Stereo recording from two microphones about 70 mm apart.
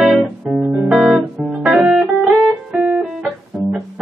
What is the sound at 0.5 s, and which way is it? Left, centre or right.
Guitar, centre.